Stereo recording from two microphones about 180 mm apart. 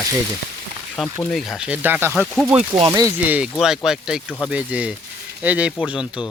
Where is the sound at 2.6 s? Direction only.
35° right (ahead or behind).